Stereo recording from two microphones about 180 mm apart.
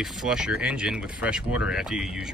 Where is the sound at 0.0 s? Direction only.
Centre (ahead or behind).